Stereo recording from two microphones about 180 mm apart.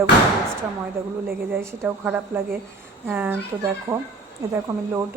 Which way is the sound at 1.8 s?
10° right (ahead or behind).